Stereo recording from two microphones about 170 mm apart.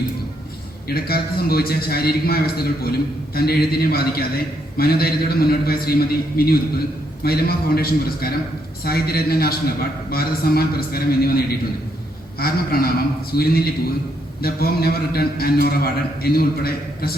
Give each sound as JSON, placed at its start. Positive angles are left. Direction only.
{"t": 0.9, "sound": "a man's voice", "side_deg": 65}